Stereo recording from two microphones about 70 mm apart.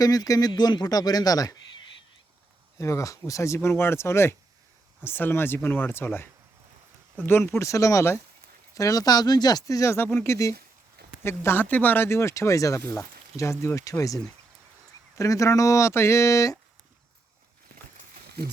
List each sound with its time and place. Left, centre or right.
0.0 s speech: left
2.7 s speech: left
7.3 s speech: left
7.6 s speech: left
11.2 s speech: left
11.6 s speech: left